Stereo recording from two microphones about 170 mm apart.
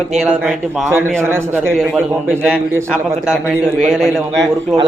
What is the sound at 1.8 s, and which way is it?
Speech, 5° right (ahead or behind).